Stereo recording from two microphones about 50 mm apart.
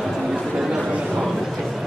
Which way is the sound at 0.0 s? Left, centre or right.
Centre.